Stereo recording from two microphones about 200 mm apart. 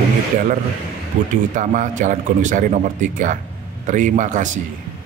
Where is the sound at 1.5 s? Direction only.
40° right (ahead or behind).